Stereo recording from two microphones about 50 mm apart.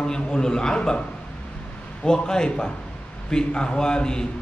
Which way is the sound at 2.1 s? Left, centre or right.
Centre.